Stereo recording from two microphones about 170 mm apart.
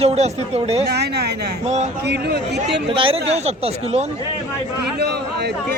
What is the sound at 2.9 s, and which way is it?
Speech, 30° right (ahead or behind).